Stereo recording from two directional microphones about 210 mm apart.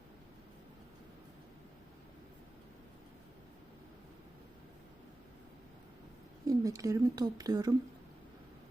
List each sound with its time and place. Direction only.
6.5 s speech: 15° right (ahead or behind)